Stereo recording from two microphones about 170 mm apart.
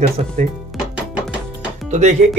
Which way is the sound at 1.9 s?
40° right (ahead or behind).